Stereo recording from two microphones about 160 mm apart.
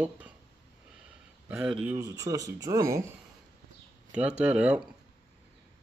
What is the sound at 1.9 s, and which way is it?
Speech, 20° right (ahead or behind).